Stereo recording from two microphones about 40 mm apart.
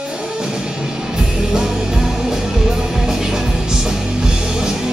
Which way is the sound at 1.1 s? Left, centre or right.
Centre.